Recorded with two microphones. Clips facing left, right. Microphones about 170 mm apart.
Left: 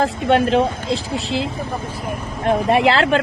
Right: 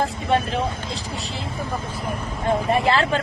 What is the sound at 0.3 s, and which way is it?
Speech, 90° left.